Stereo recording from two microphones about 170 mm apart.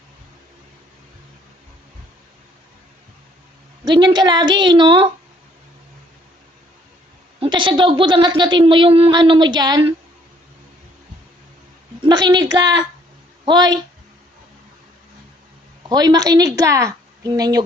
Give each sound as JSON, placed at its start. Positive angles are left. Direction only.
{"t": 3.8, "sound": "a woman's voice", "side_deg": -25}
{"t": 7.3, "sound": "a woman's voice", "side_deg": -30}
{"t": 12.0, "sound": "a woman's voice", "side_deg": -25}
{"t": 15.9, "sound": "a woman's voice", "side_deg": -25}